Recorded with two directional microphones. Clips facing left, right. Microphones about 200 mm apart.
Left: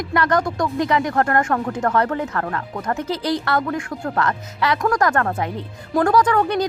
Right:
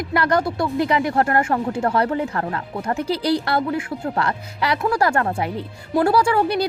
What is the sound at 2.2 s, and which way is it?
A woman's voice, 20° right (ahead or behind).